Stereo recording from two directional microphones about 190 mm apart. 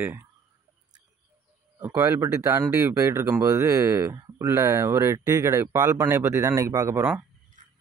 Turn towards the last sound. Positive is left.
turn(degrees=-40)  # may be behind; listen again after turning